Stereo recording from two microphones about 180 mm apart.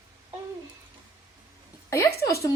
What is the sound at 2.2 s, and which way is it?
Child singing, 15° left (ahead or behind).